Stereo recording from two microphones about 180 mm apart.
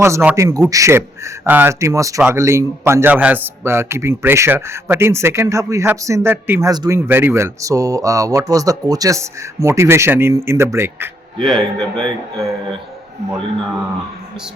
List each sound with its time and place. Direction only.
0.0 s speech: 15° right (ahead or behind)
11.4 s a man's voice: centre (ahead or behind)